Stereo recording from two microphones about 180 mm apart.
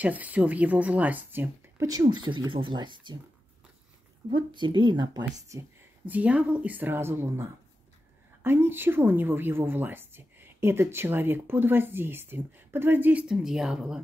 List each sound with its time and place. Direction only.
0.0 s a woman's voice: 10° right (ahead or behind); by 3.2 s 25° right (ahead or behind)
4.3 s a woman's voice: 25° right (ahead or behind); by 14.0 s 5° right (ahead or behind)